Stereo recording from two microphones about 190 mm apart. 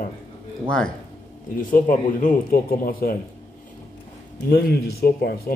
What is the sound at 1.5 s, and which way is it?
Speech, 45° left (ahead or behind).